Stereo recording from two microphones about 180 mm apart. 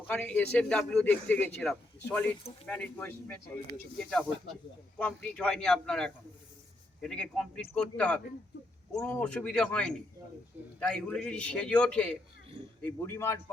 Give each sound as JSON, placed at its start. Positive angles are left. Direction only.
{"t": 0.1, "sound": "a man's voice", "side_deg": 5}